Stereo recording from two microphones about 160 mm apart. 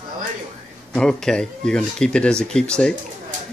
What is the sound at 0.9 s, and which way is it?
Speech, 5° left (ahead or behind).